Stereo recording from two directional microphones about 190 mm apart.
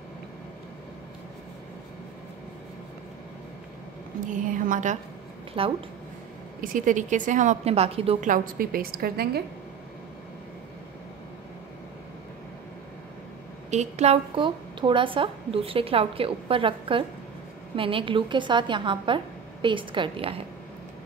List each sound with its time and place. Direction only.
4.3 s a woman's voice: 45° right (ahead or behind)
5.5 s a woman's voice: 30° right (ahead or behind)
6.6 s a woman's voice: 45° right (ahead or behind)
8.3 s a woman's voice: 50° right (ahead or behind)
13.7 s a woman's voice: 35° right (ahead or behind)